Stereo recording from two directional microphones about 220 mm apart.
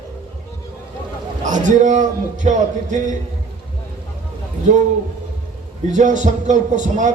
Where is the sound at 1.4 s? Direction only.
35° right (ahead or behind).